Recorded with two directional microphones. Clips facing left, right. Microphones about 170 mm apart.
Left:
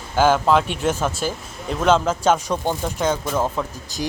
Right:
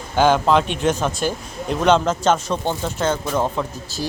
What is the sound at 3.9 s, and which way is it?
Speech, 15° left (ahead or behind).